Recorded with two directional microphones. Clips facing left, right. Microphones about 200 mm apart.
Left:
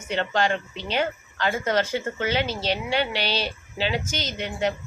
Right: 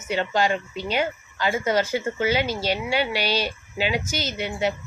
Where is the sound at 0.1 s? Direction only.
10° right (ahead or behind).